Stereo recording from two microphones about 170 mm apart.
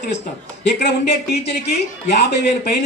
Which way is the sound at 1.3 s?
70° left (ahead or behind).